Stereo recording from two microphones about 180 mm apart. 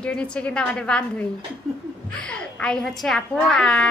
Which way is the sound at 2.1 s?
5° left (ahead or behind).